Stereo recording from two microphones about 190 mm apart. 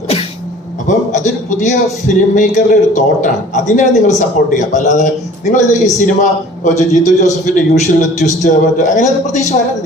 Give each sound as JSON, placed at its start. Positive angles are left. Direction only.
{"t": 0.9, "sound": "a man's voice", "side_deg": 40}